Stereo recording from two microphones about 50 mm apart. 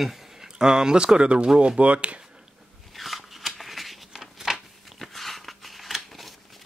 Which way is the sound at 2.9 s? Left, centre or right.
Centre.